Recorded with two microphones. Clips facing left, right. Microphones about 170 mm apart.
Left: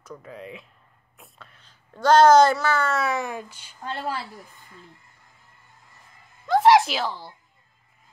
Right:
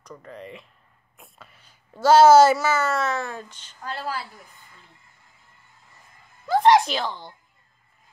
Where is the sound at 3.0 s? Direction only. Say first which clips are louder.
Left 1 dB; 15° left (ahead or behind).